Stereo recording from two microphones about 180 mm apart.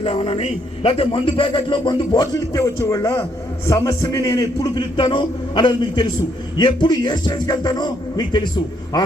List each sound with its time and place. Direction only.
0.0 s a man's voice: 30° left (ahead or behind)